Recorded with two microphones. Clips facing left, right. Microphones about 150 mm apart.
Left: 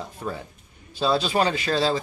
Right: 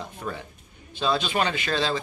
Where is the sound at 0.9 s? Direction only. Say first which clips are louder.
Left 3 dB; 35° left (ahead or behind).